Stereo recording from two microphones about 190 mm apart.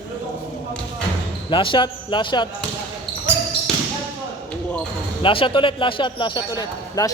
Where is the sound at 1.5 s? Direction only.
25° left (ahead or behind).